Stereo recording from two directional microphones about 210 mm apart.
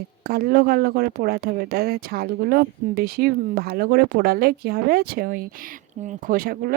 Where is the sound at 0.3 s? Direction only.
45° right (ahead or behind).